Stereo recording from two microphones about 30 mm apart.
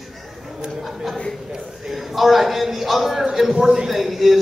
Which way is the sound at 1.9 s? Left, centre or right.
Centre.